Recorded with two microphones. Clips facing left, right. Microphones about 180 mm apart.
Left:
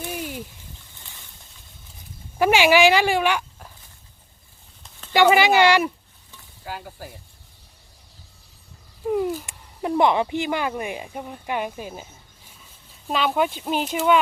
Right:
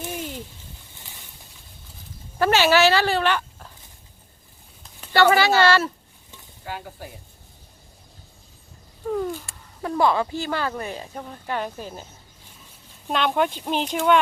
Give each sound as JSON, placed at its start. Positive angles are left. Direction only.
{"t": 0.1, "sound": "a sound", "side_deg": 10}
{"t": 2.4, "sound": "speech", "side_deg": 15}
{"t": 5.1, "sound": "speech", "side_deg": 15}
{"t": 6.7, "sound": "speech", "side_deg": 5}
{"t": 9.0, "sound": "a sound", "side_deg": 15}
{"t": 9.5, "sound": "speech", "side_deg": 20}
{"t": 13.1, "sound": "speech", "side_deg": 5}